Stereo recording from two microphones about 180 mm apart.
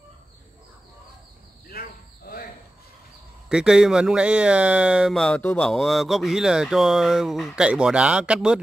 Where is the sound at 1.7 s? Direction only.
55° left (ahead or behind).